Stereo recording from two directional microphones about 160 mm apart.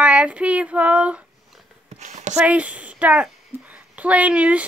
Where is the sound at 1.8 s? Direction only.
45° right (ahead or behind).